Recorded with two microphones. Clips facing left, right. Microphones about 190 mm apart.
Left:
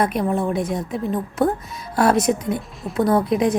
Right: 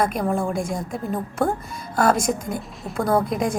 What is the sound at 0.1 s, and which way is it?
A woman's voice, 5° left (ahead or behind).